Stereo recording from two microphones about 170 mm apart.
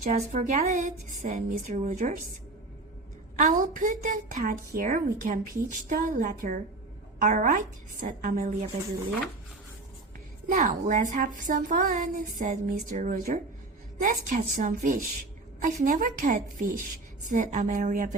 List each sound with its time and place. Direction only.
0.0 s a woman's voice: 50° right (ahead or behind)
3.3 s a woman's voice: 50° right (ahead or behind)
10.5 s a woman's voice: 50° right (ahead or behind)